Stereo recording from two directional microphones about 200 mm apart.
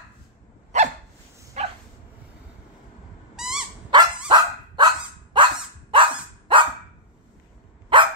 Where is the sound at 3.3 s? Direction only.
Centre (ahead or behind).